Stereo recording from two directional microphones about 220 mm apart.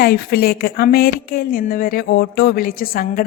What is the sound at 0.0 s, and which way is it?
A woman's voice, 45° left (ahead or behind).